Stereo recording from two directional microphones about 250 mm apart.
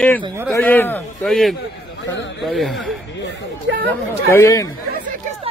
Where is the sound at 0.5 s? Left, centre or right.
Centre.